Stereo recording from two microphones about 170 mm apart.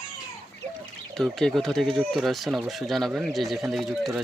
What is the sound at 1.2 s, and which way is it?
Speech, centre (ahead or behind).